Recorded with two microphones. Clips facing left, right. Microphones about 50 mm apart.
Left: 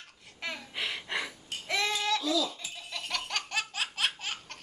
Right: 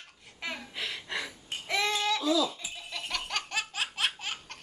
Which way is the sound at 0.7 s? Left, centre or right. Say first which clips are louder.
Left 4 dB; centre.